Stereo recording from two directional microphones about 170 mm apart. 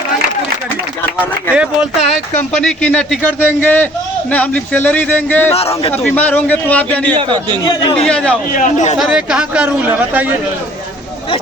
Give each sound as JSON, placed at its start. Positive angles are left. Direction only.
{"t": 1.5, "sound": "speech", "side_deg": 0}
{"t": 5.5, "sound": "a man's voice", "side_deg": 35}
{"t": 5.9, "sound": "speech", "side_deg": 10}
{"t": 7.1, "sound": "a man's voice", "side_deg": -25}
{"t": 8.0, "sound": "a man's voice", "side_deg": 5}
{"t": 8.5, "sound": "a man's voice", "side_deg": 45}
{"t": 9.0, "sound": "speech", "side_deg": -5}